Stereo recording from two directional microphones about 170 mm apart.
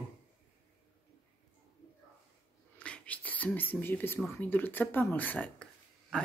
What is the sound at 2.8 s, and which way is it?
Speech, 5° left (ahead or behind).